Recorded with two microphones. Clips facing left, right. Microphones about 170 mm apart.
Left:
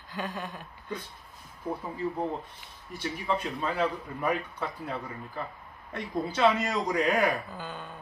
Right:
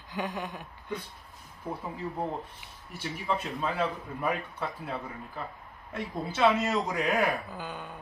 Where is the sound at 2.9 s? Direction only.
5° right (ahead or behind).